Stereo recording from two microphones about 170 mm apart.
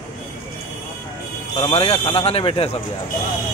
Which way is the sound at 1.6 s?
35° left (ahead or behind).